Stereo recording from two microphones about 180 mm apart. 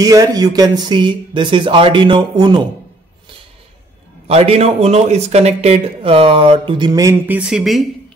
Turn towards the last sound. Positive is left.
turn(degrees=0)  # may be behind; listen again after turning